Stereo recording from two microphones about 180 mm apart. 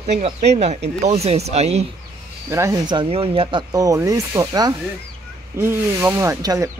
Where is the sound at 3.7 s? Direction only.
20° right (ahead or behind).